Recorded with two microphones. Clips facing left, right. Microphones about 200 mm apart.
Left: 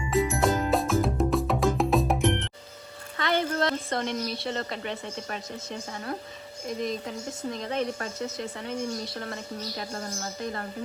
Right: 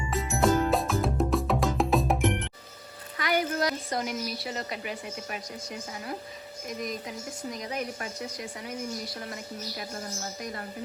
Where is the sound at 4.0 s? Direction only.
5° right (ahead or behind).